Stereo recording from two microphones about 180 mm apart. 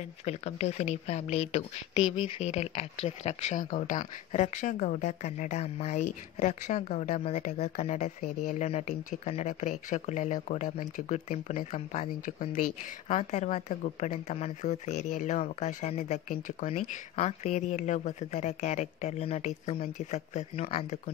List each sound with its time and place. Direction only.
0.2 s speech: 35° left (ahead or behind)